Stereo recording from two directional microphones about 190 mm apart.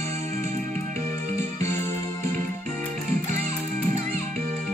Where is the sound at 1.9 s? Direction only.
40° right (ahead or behind).